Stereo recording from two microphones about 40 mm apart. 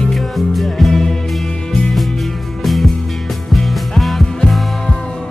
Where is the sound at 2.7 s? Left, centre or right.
Centre.